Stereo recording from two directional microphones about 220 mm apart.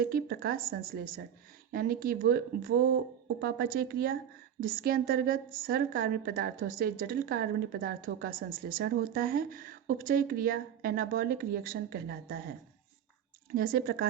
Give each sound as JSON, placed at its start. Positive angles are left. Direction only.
{"t": 0.0, "sound": "a woman's voice", "side_deg": -40}
{"t": 13.5, "sound": "speech", "side_deg": -40}